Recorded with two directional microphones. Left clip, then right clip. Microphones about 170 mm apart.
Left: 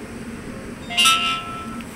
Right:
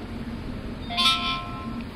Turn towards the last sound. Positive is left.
turn(degrees=30)  # may be behind; listen again after turning